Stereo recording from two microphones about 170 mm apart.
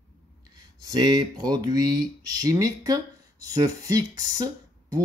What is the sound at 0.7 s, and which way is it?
Speech, 25° right (ahead or behind).